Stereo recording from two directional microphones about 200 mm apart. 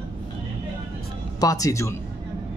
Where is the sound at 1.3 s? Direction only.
15° left (ahead or behind).